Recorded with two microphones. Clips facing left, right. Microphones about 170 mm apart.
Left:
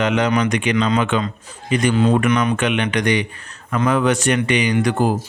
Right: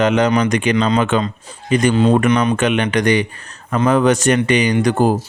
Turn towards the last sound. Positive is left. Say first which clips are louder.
# right 3 dB
turn(degrees=-40)  # may be behind; listen again after turning